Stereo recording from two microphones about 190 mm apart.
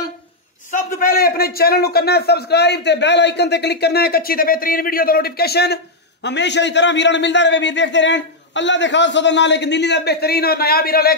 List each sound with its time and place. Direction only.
0.7 s a man's voice: 45° left (ahead or behind)